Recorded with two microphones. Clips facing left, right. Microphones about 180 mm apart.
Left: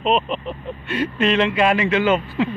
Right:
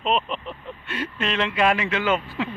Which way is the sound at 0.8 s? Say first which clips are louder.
Left 8 dB; 75° left (ahead or behind).